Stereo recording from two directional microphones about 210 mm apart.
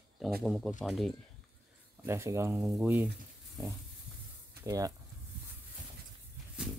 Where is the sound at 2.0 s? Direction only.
15° right (ahead or behind).